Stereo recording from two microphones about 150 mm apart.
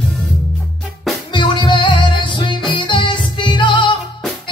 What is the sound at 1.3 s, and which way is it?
Music, 30° left (ahead or behind).